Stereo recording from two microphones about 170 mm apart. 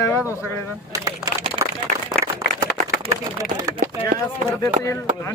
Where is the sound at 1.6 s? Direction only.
30° right (ahead or behind).